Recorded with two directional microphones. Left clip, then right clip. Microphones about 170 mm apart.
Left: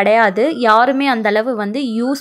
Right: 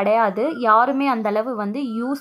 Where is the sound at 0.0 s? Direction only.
20° left (ahead or behind).